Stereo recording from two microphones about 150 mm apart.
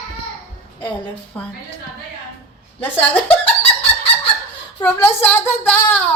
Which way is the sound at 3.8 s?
40° left (ahead or behind).